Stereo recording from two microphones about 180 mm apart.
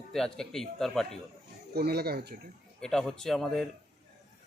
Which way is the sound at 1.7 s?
60° right (ahead or behind).